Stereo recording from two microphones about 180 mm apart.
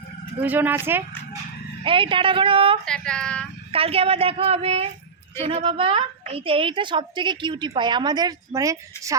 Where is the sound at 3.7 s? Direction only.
35° right (ahead or behind).